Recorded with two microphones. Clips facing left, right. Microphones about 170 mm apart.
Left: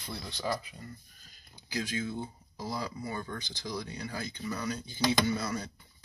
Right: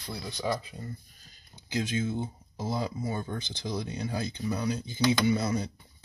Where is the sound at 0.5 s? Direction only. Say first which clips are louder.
Right 3 dB; 30° right (ahead or behind).